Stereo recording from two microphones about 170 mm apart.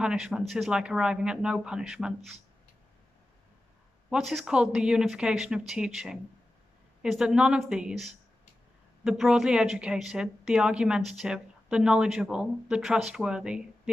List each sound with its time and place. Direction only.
0.0 s a woman's voice: 5° right (ahead or behind)
4.1 s a woman's voice: centre (ahead or behind)